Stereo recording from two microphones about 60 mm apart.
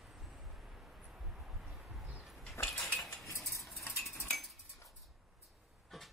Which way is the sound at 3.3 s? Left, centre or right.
Left.